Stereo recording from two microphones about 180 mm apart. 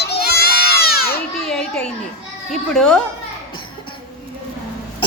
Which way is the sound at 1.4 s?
5° left (ahead or behind).